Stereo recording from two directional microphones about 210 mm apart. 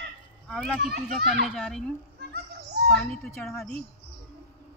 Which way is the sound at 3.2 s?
Centre (ahead or behind).